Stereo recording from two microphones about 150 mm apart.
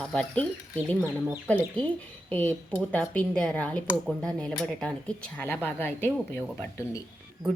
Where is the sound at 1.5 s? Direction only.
10° left (ahead or behind).